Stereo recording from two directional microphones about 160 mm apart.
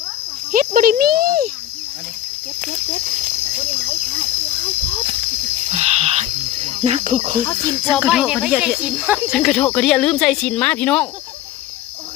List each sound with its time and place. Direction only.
0.5 s a child's voice: 60° right (ahead or behind)
5.7 s a sound: 40° right (ahead or behind)
7.9 s speech: 5° right (ahead or behind)